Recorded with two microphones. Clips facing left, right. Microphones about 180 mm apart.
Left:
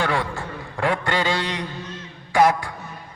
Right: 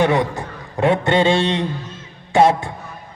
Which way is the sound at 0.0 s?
20° right (ahead or behind).